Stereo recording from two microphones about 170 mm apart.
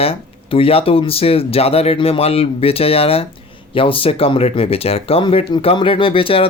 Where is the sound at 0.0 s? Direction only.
35° left (ahead or behind).